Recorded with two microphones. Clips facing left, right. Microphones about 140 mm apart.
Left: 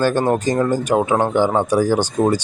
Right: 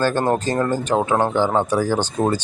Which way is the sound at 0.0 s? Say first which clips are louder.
Left 2 dB; 15° left (ahead or behind).